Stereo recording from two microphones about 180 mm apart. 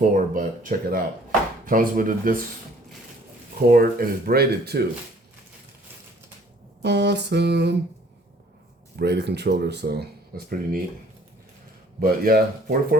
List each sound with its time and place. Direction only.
0.0 s speech: 50° right (ahead or behind)
3.7 s speech: 55° right (ahead or behind)
6.8 s speech: 70° right (ahead or behind)
9.0 s speech: 70° right (ahead or behind)
11.9 s speech: 55° right (ahead or behind)